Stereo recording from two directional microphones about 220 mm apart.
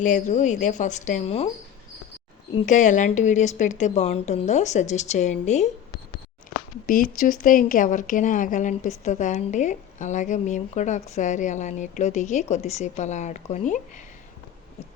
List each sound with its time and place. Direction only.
0.0 s a woman's voice: 35° left (ahead or behind)
2.6 s a woman's voice: 35° left (ahead or behind)
6.8 s a woman's voice: 40° left (ahead or behind)